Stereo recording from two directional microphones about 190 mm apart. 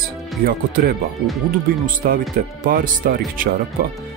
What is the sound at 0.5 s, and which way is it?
Speech, 50° right (ahead or behind).